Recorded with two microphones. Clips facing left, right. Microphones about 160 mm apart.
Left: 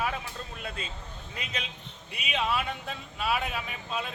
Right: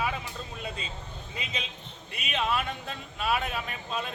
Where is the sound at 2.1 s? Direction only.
5° left (ahead or behind).